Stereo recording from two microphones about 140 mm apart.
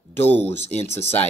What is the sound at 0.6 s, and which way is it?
Speech, 50° left (ahead or behind).